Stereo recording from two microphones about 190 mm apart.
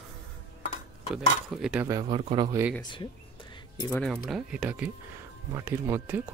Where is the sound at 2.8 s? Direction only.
25° left (ahead or behind).